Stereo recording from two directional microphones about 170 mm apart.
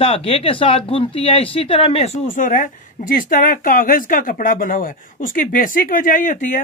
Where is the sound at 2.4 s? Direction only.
50° left (ahead or behind).